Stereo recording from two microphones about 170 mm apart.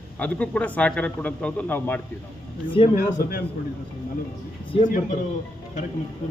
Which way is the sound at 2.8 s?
30° left (ahead or behind).